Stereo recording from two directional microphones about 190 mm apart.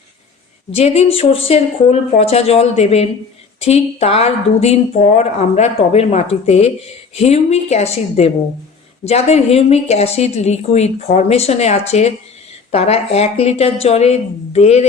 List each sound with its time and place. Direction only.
0.7 s speech: 30° left (ahead or behind)